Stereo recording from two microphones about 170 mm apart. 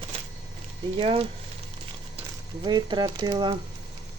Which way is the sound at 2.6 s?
25° right (ahead or behind).